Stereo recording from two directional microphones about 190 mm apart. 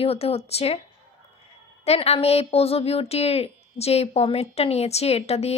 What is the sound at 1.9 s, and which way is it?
A woman's voice, 30° left (ahead or behind).